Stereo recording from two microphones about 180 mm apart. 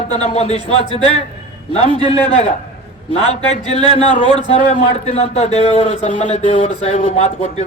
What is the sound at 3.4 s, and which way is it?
Speech, 35° left (ahead or behind).